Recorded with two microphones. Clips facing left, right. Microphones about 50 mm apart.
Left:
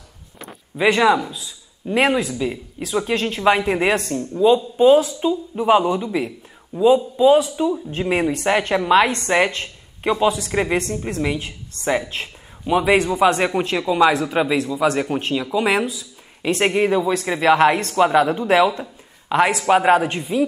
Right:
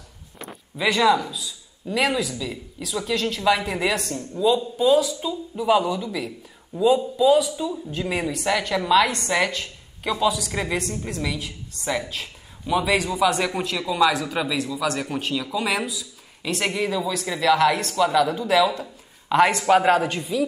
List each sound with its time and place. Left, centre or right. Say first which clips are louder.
0.7 s a woman's voice: left 3 dB; left
7.2 s a woman's voice: left 4 dB; left
19.2 s speech: left 1 dB; centre; by 20.4 s left